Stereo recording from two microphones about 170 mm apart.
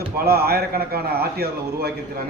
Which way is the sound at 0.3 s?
65° right (ahead or behind).